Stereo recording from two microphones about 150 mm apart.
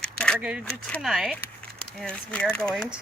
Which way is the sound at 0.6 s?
5° left (ahead or behind).